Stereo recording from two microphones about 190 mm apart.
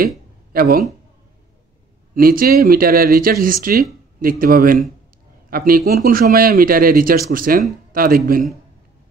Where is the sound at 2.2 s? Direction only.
50° right (ahead or behind).